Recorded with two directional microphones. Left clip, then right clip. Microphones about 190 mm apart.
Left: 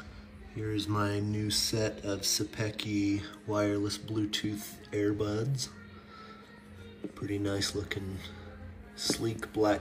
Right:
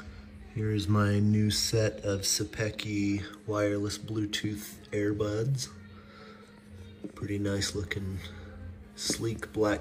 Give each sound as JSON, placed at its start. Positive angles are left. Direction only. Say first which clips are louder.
{"t": 0.7, "sound": "speech", "louder": "right 1 dB", "side_deg": 15}
{"t": 7.2, "sound": "speech", "louder": "right 1 dB", "side_deg": 10}